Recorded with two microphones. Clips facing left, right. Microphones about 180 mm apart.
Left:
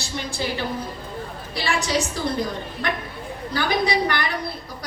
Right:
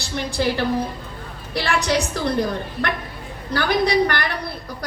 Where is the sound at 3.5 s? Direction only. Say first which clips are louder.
Right 3 dB; 60° right (ahead or behind).